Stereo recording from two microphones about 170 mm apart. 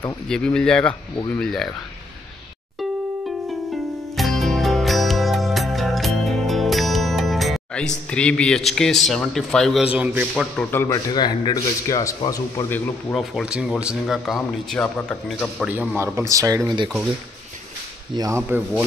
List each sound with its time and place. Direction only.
0.3 s a man's voice: 5° left (ahead or behind)
3.7 s music: centre (ahead or behind)
10.3 s a man's voice: centre (ahead or behind)
10.7 s speech: 15° left (ahead or behind)
11.1 s speech: 25° left (ahead or behind)
13.1 s a man's voice: centre (ahead or behind)
15.7 s speech: 10° right (ahead or behind); by 16.9 s 25° right (ahead or behind)
18.1 s speech: 20° right (ahead or behind)